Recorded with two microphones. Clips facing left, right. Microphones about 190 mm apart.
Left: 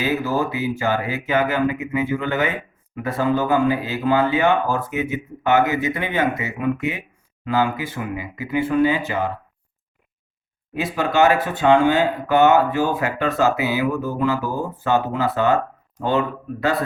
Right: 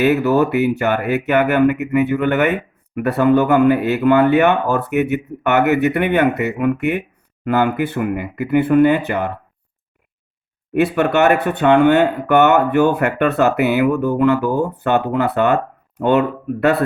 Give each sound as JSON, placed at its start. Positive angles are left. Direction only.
{"t": 0.0, "sound": "speech", "side_deg": -65}
{"t": 10.8, "sound": "speech", "side_deg": -65}